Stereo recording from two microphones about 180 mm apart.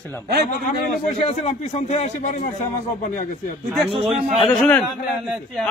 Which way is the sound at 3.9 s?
35° right (ahead or behind).